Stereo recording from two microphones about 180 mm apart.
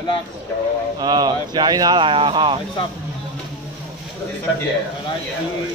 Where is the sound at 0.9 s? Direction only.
25° right (ahead or behind).